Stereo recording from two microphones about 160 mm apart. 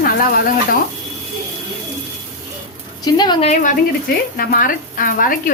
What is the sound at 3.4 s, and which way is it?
Sizzle, 50° left (ahead or behind).